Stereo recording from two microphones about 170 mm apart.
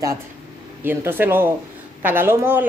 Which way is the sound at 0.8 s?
10° right (ahead or behind).